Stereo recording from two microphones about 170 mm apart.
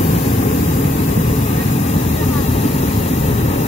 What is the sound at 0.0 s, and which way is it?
Vehicle, 40° left (ahead or behind).